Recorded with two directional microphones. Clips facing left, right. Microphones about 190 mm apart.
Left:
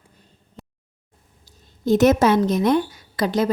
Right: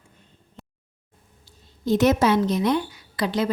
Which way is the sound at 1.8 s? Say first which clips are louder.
Left 3 dB; 50° left (ahead or behind).